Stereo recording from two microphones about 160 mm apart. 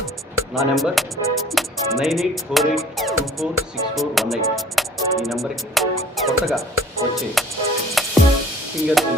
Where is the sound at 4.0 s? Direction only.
Centre (ahead or behind).